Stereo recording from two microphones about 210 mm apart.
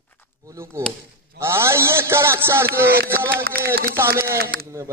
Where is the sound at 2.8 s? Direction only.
50° right (ahead or behind).